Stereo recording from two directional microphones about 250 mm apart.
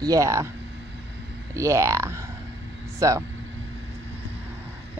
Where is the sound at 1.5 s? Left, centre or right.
Centre.